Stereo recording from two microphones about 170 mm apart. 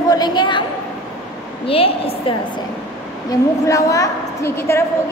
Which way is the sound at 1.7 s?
35° left (ahead or behind).